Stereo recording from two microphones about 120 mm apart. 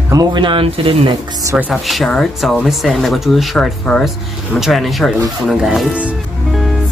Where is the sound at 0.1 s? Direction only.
35° right (ahead or behind); by 1.1 s 50° right (ahead or behind).